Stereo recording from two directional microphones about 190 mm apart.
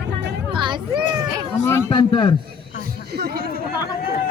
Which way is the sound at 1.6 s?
15° left (ahead or behind).